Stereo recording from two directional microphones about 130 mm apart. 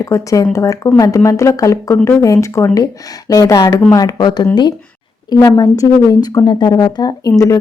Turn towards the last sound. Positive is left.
turn(degrees=25)  # may be behind; listen again after turning